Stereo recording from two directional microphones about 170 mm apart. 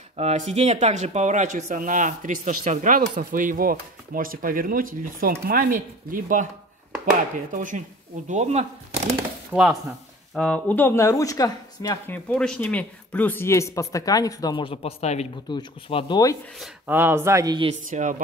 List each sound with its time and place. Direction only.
0.1 s speech: 40° right (ahead or behind)
7.5 s speech: 50° right (ahead or behind)
8.3 s speech: 40° right (ahead or behind)
9.5 s speech: 5° right (ahead or behind); by 12.0 s 20° left (ahead or behind)
12.1 s speech: 5° left (ahead or behind); by 16.3 s 25° left (ahead or behind)
16.5 s speech: centre (ahead or behind)
16.9 s speech: 15° right (ahead or behind)
17.8 s speech: 50° right (ahead or behind)